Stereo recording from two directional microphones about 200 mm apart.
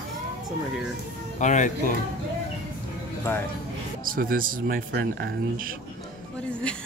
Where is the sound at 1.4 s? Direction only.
35° left (ahead or behind).